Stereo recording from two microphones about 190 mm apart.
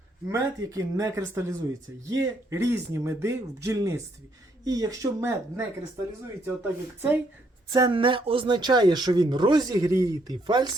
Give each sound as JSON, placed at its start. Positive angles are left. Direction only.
{"t": 0.3, "sound": "a man's voice", "side_deg": -20}
{"t": 7.7, "sound": "speech", "side_deg": -20}